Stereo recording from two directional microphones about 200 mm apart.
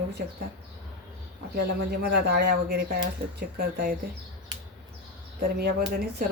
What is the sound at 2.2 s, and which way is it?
A man's voice, 55° right (ahead or behind).